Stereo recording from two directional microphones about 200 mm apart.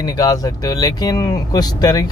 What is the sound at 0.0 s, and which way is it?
Speech, 20° left (ahead or behind).